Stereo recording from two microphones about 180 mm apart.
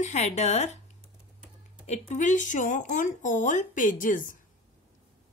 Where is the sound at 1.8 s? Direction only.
40° left (ahead or behind).